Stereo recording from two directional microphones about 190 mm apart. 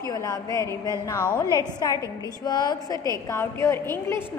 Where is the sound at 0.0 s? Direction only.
15° left (ahead or behind).